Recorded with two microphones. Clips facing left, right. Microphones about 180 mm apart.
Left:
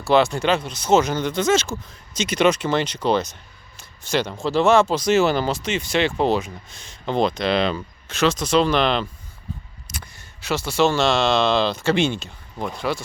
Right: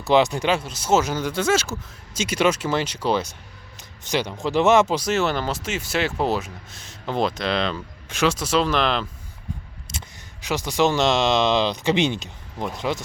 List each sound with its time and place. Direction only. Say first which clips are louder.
0.0 s speech: left 1 dB; 15° right (ahead or behind)
5.0 s speech: left 4 dB; centre (ahead or behind)
8.0 s speech: left 1 dB; 10° right (ahead or behind)
9.9 s a sound: even; 30° right (ahead or behind)
10.4 s speech: left 1 dB; 15° right (ahead or behind)